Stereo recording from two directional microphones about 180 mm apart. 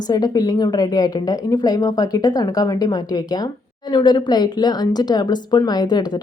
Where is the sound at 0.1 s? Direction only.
20° left (ahead or behind).